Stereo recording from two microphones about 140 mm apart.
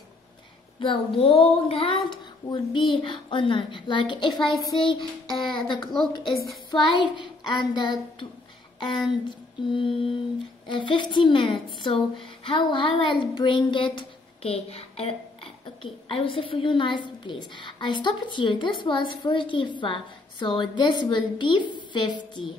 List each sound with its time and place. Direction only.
0.7 s child singing: 40° left (ahead or behind)
2.0 s a woman's voice: 35° left (ahead or behind)
9.3 s mantra: 35° left (ahead or behind)
10.7 s a woman's voice: 35° left (ahead or behind)